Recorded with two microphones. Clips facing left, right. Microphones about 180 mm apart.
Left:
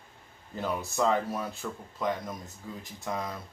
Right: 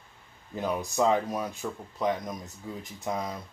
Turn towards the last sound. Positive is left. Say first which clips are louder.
# right 2 dB
turn(degrees=-15)  # may be behind; listen again after turning